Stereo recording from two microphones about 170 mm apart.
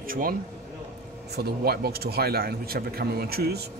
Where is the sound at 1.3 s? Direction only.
70° right (ahead or behind).